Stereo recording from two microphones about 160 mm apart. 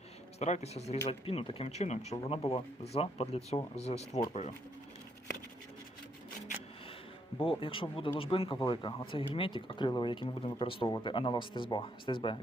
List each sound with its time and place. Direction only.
0.3 s speech: 45° left (ahead or behind)
7.4 s speech: 35° left (ahead or behind)